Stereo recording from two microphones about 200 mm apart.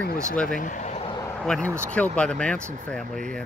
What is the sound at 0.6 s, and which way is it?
Vehicle, 40° left (ahead or behind).